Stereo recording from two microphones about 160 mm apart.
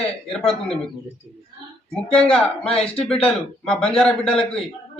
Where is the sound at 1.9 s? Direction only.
5° left (ahead or behind).